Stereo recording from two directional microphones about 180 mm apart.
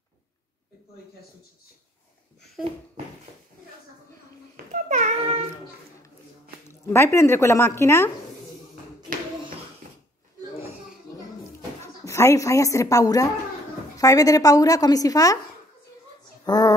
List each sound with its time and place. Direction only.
4.8 s a sound: 40° right (ahead or behind)
6.9 s a woman's voice: 15° left (ahead or behind)
12.0 s a woman's voice: 15° left (ahead or behind)
16.4 s speech: 20° left (ahead or behind)